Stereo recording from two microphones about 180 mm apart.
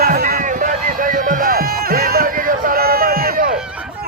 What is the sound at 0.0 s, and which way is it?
Music, 55° right (ahead or behind).